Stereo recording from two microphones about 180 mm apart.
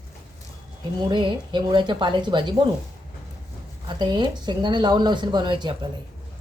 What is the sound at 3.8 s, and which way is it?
Speech, 25° right (ahead or behind).